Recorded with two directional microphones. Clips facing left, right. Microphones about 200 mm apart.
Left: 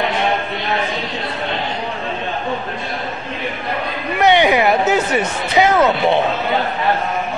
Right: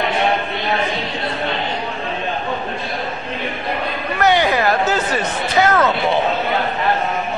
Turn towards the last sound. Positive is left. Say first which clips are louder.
# left 2 dB
turn(degrees=15)  # may be behind; listen again after turning